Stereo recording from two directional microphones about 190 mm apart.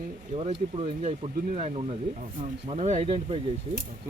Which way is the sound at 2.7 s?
35° right (ahead or behind).